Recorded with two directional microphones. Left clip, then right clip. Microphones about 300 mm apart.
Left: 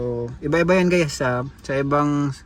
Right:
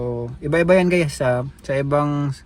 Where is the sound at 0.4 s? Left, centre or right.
Centre.